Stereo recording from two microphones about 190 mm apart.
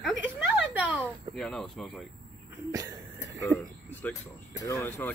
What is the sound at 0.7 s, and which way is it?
Speech, 5° right (ahead or behind).